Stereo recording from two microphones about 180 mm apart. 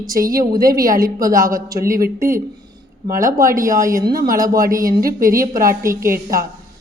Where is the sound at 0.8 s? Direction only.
50° right (ahead or behind).